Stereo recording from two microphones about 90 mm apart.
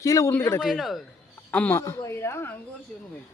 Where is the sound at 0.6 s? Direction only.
Centre (ahead or behind).